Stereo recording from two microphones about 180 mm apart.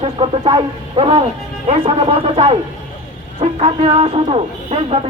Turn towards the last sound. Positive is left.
turn(degrees=-35)  # may be behind; listen again after turning